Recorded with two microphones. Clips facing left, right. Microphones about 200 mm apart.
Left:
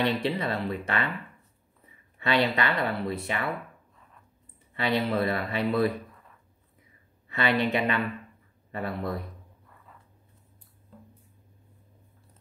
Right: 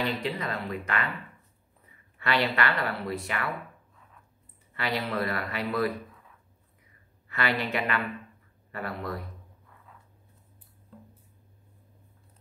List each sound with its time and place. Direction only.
0.2 s speech: 30° left (ahead or behind)
2.1 s speech: 20° left (ahead or behind)
4.7 s speech: 25° left (ahead or behind)
7.2 s speech: 25° left (ahead or behind)